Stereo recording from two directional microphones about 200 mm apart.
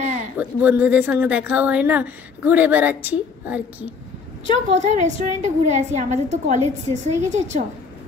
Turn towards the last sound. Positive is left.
turn(degrees=-35)  # may be behind; listen again after turning